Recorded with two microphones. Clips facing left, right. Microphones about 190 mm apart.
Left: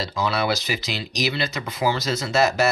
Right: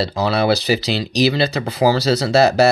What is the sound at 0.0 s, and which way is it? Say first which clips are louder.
Speech: right 6 dB; 35° right (ahead or behind).